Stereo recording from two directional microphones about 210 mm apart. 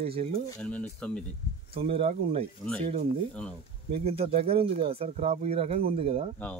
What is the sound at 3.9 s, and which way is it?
Speech, 30° right (ahead or behind).